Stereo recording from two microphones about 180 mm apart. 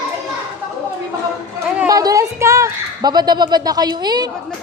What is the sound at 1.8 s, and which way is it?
Speech, 20° right (ahead or behind).